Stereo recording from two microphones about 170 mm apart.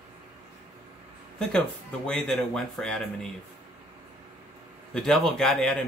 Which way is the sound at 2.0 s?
5° left (ahead or behind).